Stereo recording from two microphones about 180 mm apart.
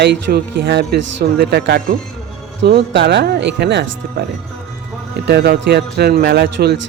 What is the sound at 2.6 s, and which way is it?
Mantra, 70° right (ahead or behind).